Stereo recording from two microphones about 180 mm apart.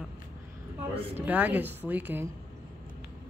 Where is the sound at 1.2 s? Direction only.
10° right (ahead or behind).